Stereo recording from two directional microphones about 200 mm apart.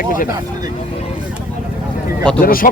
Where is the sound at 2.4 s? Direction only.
45° left (ahead or behind).